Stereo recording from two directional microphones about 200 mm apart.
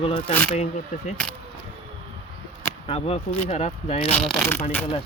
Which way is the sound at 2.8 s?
30° left (ahead or behind).